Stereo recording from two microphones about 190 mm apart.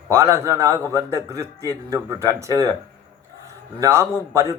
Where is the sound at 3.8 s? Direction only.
15° right (ahead or behind).